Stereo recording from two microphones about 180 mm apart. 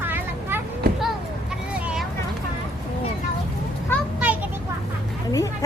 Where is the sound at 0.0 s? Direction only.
10° right (ahead or behind).